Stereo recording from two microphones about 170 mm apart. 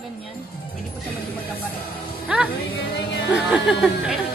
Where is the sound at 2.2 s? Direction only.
5° right (ahead or behind).